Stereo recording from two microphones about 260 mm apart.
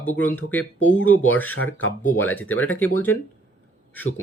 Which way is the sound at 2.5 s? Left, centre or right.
Left.